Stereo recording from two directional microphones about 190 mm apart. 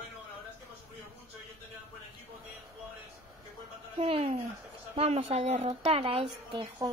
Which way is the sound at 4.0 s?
30° right (ahead or behind).